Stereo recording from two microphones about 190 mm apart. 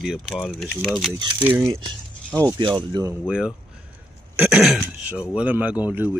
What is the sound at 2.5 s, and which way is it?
Speech, 20° right (ahead or behind).